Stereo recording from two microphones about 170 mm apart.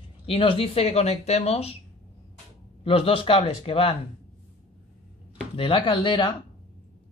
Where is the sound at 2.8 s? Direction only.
35° left (ahead or behind).